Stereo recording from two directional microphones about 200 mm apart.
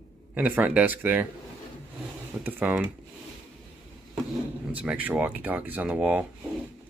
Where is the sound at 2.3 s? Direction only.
10° right (ahead or behind).